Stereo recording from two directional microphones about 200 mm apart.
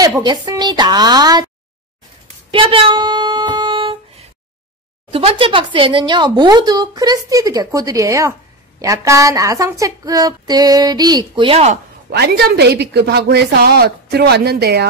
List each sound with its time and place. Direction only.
0.0 s speech: 20° right (ahead or behind)
2.5 s speech: 25° right (ahead or behind)
5.1 s speech: 25° right (ahead or behind)
12.1 s a woman's voice: 55° right (ahead or behind)